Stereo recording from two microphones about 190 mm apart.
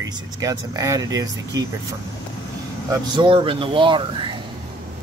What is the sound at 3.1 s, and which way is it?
Speech, 25° right (ahead or behind).